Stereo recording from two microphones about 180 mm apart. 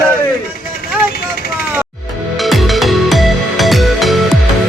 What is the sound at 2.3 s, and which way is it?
Music, centre (ahead or behind).